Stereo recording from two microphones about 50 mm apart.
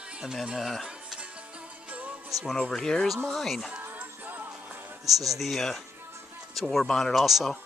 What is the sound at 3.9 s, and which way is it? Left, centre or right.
Music, right.